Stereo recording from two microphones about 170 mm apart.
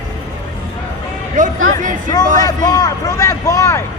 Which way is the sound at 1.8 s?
50° right (ahead or behind).